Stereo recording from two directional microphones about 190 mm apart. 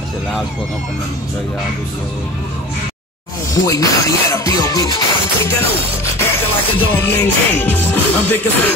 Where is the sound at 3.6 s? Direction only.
15° left (ahead or behind).